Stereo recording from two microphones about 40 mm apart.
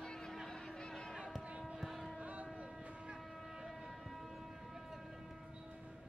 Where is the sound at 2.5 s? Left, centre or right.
Centre.